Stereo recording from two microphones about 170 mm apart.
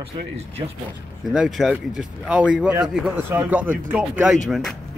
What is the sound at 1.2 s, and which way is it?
Speech, centre (ahead or behind).